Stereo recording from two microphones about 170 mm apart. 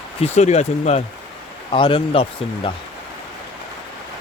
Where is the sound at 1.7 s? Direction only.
30° left (ahead or behind).